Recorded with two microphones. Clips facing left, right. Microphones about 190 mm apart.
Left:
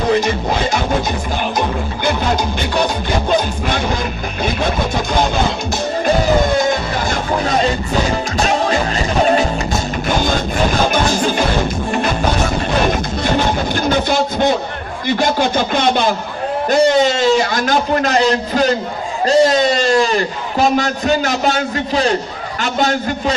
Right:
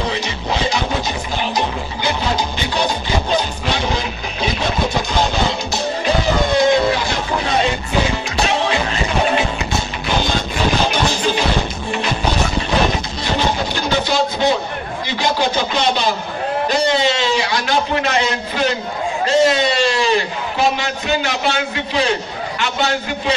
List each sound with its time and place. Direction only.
0.1 s a man's voice: 50° left (ahead or behind)
2.6 s a man's voice: 55° left (ahead or behind)
6.7 s a man's voice: 45° left (ahead or behind)
10.0 s music: 50° left (ahead or behind)
10.9 s a man's voice: 50° left (ahead or behind)
13.7 s a man's voice: 50° left (ahead or behind)